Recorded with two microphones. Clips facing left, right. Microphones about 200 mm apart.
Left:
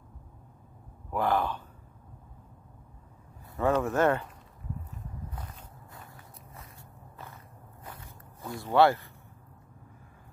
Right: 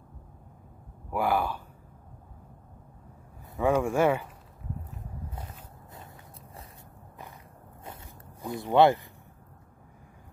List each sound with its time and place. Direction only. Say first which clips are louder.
1.1 s speech: right 1 dB; 10° right (ahead or behind)
3.5 s speech: right 1 dB; 10° right (ahead or behind)
7.8 s zipper: right 2 dB; 25° right (ahead or behind)